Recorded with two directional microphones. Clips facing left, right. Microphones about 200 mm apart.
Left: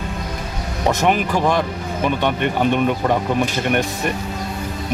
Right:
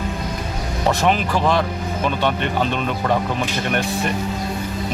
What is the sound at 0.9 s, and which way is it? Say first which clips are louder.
Speech: left 1 dB; 15° left (ahead or behind).